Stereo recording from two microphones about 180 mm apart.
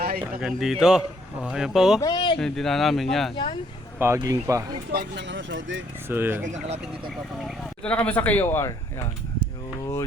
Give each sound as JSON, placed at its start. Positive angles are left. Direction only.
{"t": 0.2, "sound": "speech", "side_deg": -5}
{"t": 2.0, "sound": "speech", "side_deg": 25}
{"t": 2.4, "sound": "speech", "side_deg": 0}
{"t": 3.3, "sound": "speech", "side_deg": 25}
{"t": 3.9, "sound": "speech", "side_deg": -15}
{"t": 4.9, "sound": "speech", "side_deg": -70}
{"t": 6.1, "sound": "speech", "side_deg": -10}
{"t": 6.4, "sound": "speech", "side_deg": -40}
{"t": 7.4, "sound": "speech", "side_deg": 10}